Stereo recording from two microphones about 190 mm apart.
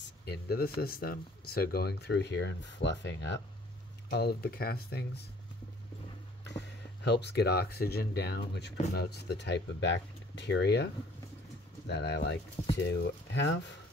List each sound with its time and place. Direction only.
0.2 s speech: 55° left (ahead or behind)
4.1 s speech: 55° left (ahead or behind)
6.4 s speech: 65° left (ahead or behind)
11.9 s speech: 60° left (ahead or behind)